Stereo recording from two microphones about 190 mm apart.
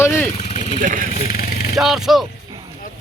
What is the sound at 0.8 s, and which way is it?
Speech, 45° right (ahead or behind).